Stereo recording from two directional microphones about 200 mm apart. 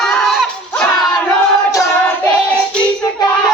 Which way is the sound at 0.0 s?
Centre (ahead or behind).